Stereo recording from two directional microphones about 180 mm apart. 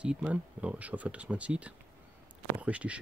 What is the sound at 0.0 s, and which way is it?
Speech, 5° right (ahead or behind).